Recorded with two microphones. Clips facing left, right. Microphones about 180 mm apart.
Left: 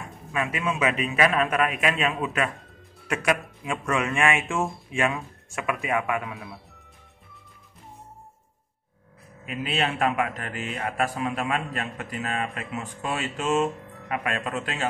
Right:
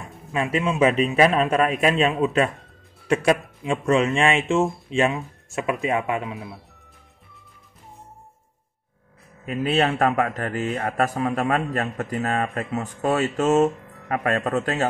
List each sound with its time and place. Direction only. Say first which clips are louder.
0.3 s a man's voice: right 4 dB; 30° right (ahead or behind)
9.5 s a man's voice: right 6 dB; 40° right (ahead or behind)